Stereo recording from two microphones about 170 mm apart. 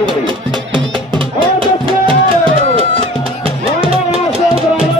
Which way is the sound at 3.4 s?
35° right (ahead or behind).